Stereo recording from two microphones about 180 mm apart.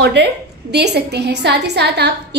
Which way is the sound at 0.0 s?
70° right (ahead or behind).